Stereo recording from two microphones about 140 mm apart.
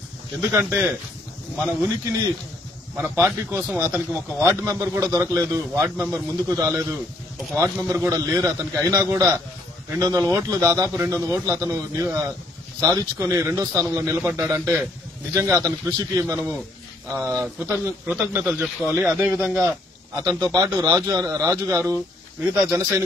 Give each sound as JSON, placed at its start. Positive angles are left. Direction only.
{"t": 0.4, "sound": "a man's voice", "side_deg": -15}
{"t": 3.0, "sound": "a man's voice", "side_deg": -15}
{"t": 18.4, "sound": "a man's voice", "side_deg": -5}
{"t": 20.3, "sound": "a man's voice", "side_deg": -30}
{"t": 22.4, "sound": "a man's voice", "side_deg": -10}